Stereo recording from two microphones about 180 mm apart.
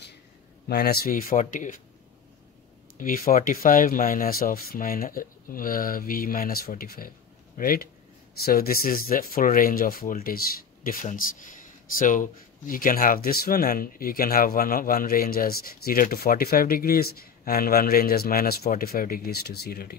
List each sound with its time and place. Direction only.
0.7 s speech: 60° left (ahead or behind)
3.0 s speech: 50° left (ahead or behind)